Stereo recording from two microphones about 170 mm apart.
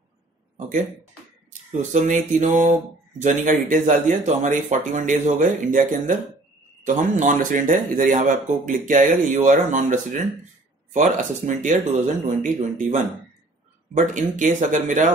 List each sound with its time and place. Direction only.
1.8 s speech: 45° right (ahead or behind)
7.2 s speech: 50° right (ahead or behind)